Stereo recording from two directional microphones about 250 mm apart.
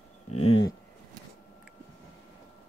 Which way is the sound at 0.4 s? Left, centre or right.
Left.